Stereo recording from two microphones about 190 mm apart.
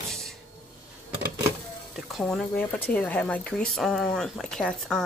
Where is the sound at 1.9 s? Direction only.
Centre (ahead or behind).